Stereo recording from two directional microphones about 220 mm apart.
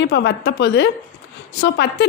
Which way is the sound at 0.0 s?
50° left (ahead or behind).